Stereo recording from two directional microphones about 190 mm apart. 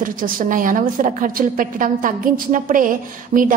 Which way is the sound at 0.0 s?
45° right (ahead or behind).